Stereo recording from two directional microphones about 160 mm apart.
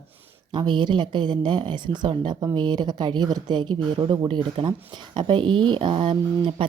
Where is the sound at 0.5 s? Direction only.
30° right (ahead or behind).